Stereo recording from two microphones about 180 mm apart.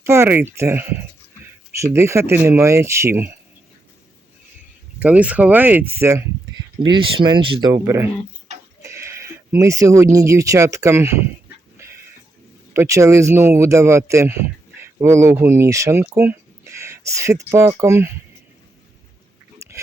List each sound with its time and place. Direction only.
0.0 s speech: 15° right (ahead or behind)
4.9 s speech: 10° right (ahead or behind)
6.9 s speech: 25° right (ahead or behind)
7.7 s speech: 15° right (ahead or behind)
11.8 s a sound: 15° right (ahead or behind)
12.7 s speech: 15° right (ahead or behind)
19.6 s pig: 15° right (ahead or behind)